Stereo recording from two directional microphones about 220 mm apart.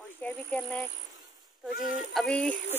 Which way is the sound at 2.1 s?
5° left (ahead or behind).